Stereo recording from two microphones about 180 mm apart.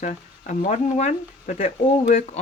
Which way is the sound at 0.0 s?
45° left (ahead or behind).